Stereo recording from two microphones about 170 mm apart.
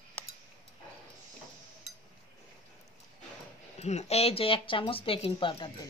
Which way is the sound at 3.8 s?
40° left (ahead or behind).